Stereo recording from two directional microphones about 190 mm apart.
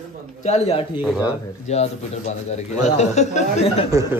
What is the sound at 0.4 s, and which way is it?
Speech, 35° left (ahead or behind).